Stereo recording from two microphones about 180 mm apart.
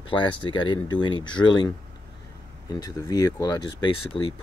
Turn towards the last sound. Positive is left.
turn(degrees=30)  # may be behind; listen again after turning